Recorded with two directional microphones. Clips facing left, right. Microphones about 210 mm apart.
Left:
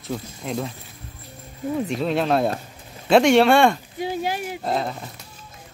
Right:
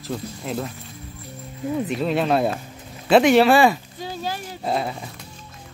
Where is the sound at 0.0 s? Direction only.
Centre (ahead or behind).